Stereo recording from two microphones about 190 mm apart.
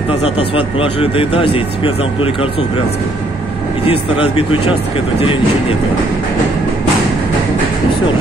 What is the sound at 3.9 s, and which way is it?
Speech, 30° left (ahead or behind).